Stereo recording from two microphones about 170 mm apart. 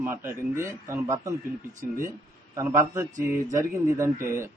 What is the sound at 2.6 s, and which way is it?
A man's voice, 15° right (ahead or behind).